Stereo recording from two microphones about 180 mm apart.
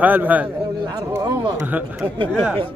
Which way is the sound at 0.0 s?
10° right (ahead or behind).